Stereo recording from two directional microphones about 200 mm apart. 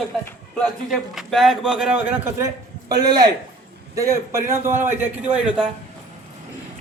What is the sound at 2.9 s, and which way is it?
A man's voice, 20° right (ahead or behind).